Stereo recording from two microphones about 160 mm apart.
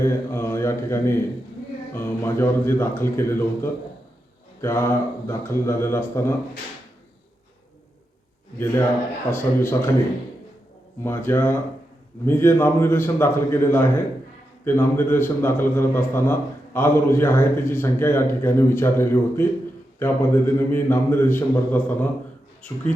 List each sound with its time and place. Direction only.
0.0 s mantra: 15° left (ahead or behind)
1.9 s a man's voice: 15° left (ahead or behind)
8.5 s a man's voice: 15° left (ahead or behind)
11.0 s a man's voice: 15° left (ahead or behind)